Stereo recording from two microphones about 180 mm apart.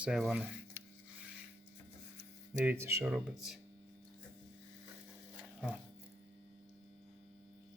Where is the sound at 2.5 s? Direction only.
10° right (ahead or behind).